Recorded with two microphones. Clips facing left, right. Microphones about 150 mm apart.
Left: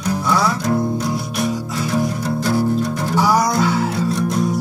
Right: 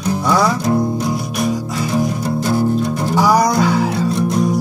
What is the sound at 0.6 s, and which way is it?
Music, 15° right (ahead or behind).